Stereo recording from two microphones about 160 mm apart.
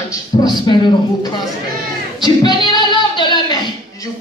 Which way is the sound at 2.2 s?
25° left (ahead or behind).